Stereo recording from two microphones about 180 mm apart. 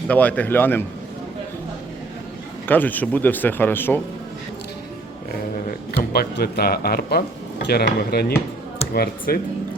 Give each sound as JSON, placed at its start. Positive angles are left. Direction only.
{"t": 0.1, "sound": "speech", "side_deg": 10}
{"t": 2.6, "sound": "speech", "side_deg": 10}
{"t": 6.0, "sound": "speech", "side_deg": 60}